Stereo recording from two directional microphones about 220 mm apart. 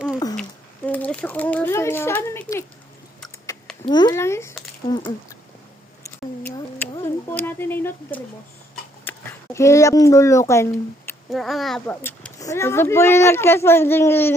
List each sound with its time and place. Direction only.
0.9 s speech: 5° left (ahead or behind)
3.8 s speech: 20° left (ahead or behind)
6.9 s speech: 10° left (ahead or behind)
11.3 s speech: centre (ahead or behind)